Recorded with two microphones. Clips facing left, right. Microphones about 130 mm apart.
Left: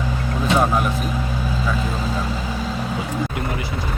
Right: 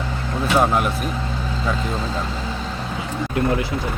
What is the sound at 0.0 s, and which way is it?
Vehicle, 15° left (ahead or behind).